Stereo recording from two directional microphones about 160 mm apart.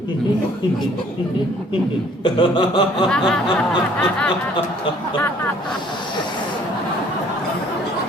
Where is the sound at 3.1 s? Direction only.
5° left (ahead or behind).